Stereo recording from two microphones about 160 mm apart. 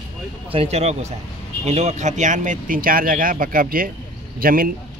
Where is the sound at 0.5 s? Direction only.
40° right (ahead or behind).